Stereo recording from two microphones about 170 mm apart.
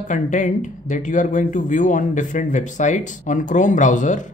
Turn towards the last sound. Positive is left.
turn(degrees=45)  # may be behind; listen again after turning